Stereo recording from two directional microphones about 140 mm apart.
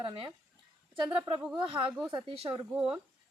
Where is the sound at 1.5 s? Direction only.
35° right (ahead or behind).